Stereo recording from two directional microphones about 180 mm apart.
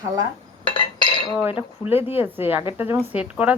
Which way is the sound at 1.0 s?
25° left (ahead or behind).